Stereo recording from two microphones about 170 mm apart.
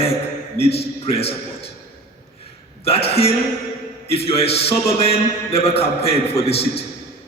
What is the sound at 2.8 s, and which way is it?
A man's voice, 35° left (ahead or behind).